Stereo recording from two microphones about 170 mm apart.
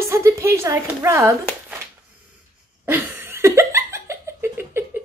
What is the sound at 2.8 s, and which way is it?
Laughter, 10° right (ahead or behind).